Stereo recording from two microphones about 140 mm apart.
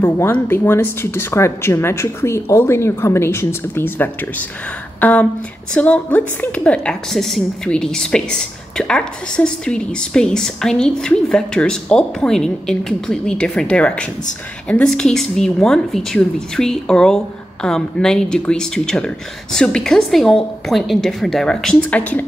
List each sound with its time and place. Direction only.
0.0 s a woman's voice: 15° left (ahead or behind)